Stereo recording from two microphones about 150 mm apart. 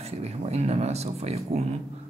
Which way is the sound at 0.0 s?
45° right (ahead or behind).